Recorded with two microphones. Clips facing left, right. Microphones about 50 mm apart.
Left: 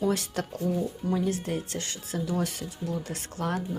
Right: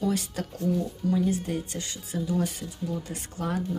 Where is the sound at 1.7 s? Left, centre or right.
Left.